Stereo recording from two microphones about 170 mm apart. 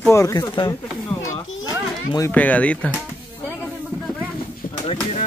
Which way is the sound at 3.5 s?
10° left (ahead or behind).